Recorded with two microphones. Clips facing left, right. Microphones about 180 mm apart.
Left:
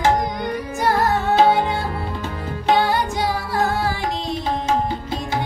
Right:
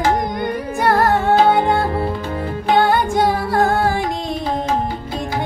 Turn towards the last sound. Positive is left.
turn(degrees=-50)  # may be behind; listen again after turning